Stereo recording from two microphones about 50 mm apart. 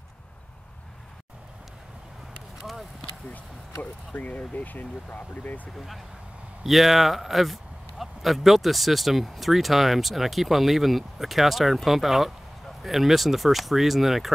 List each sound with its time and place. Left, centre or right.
2.6 s clip-clop: centre
4.1 s speech: left
6.6 s speech: centre